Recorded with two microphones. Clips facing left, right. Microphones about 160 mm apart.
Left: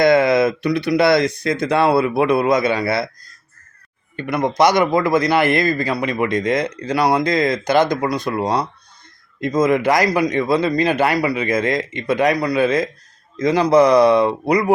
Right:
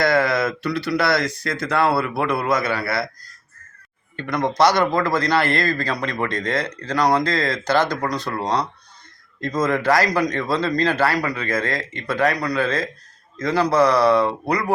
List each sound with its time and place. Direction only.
0.0 s speech: 20° left (ahead or behind)
4.2 s a man's voice: 10° left (ahead or behind)